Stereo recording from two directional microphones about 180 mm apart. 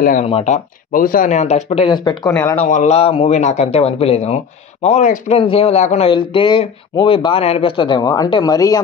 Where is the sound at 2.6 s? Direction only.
40° left (ahead or behind).